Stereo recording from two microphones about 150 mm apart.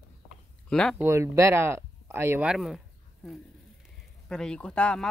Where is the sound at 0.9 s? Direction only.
15° right (ahead or behind).